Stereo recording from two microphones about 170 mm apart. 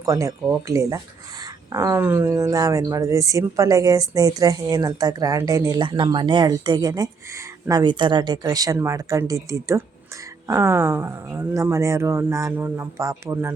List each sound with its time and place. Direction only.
0.0 s speech: 20° right (ahead or behind)